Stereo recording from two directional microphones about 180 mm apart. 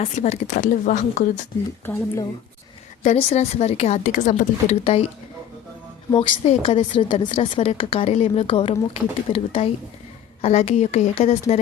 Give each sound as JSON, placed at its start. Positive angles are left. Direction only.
{"t": 0.0, "sound": "speech", "side_deg": 40}
{"t": 1.8, "sound": "speech", "side_deg": 10}
{"t": 3.0, "sound": "a woman's voice", "side_deg": 40}
{"t": 6.1, "sound": "a woman's voice", "side_deg": 30}